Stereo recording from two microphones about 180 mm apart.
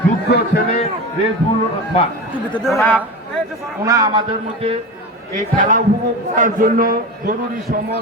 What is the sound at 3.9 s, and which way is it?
Speech, 20° right (ahead or behind).